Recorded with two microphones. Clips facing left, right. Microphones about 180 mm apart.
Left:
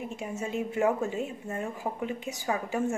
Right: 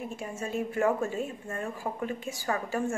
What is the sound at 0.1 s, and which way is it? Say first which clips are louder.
A woman's voice: left 1 dB; 20° left (ahead or behind).